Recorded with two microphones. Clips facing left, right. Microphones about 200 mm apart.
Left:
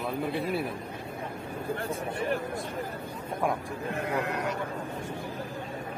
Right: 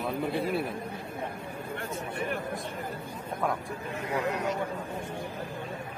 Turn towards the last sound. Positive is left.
turn(degrees=60)  # may be behind; listen again after turning